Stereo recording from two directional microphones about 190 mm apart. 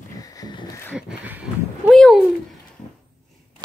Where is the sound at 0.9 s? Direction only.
5° right (ahead or behind).